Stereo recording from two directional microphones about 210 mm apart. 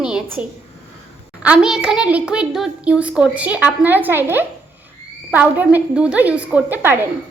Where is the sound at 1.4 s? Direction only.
5° right (ahead or behind).